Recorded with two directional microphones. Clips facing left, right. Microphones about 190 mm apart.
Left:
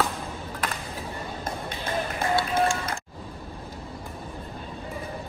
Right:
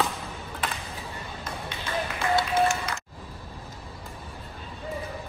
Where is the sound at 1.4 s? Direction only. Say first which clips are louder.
Left 3 dB; 55° left (ahead or behind).